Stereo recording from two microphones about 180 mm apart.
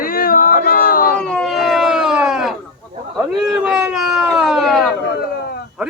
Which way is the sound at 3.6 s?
5° right (ahead or behind).